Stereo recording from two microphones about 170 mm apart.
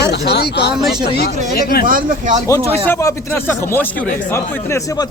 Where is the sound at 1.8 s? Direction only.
50° right (ahead or behind).